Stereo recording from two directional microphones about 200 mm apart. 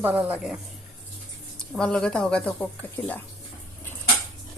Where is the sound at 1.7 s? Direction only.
5° left (ahead or behind).